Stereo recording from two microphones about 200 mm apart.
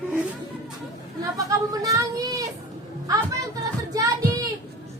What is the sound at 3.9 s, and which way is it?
Speech, 20° right (ahead or behind).